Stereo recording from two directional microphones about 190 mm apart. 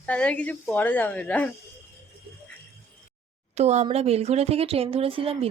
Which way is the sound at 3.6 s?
35° right (ahead or behind).